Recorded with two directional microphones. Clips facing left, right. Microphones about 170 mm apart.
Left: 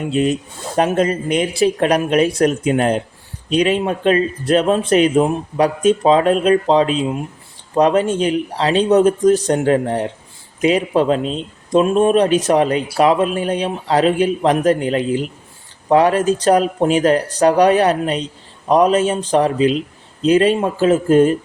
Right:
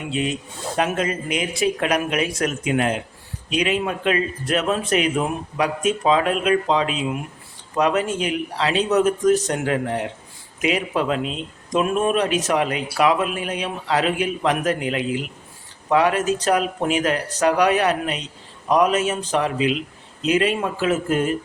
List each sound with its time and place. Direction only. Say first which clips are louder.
0.0 s speech: left 7 dB; 45° left (ahead or behind)
0.8 s speech: left 7 dB; 35° left (ahead or behind)